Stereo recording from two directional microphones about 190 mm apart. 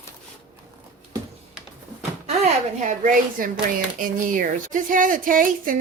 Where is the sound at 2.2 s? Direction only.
40° right (ahead or behind).